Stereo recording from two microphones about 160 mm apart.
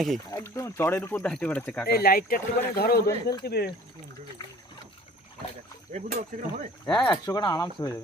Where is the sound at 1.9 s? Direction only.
75° left (ahead or behind).